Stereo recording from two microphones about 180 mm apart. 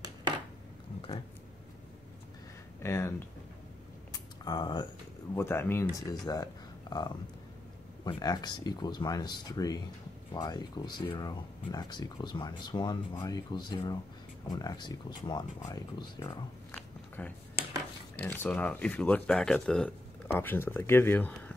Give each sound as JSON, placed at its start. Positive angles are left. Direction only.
{"t": 2.8, "sound": "speech", "side_deg": 15}
{"t": 4.1, "sound": "a sound", "side_deg": 25}
{"t": 5.3, "sound": "speech", "side_deg": 15}
{"t": 17.2, "sound": "speech", "side_deg": 10}